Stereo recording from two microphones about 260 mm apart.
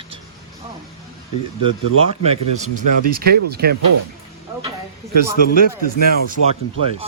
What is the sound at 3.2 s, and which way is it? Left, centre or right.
Speech, right.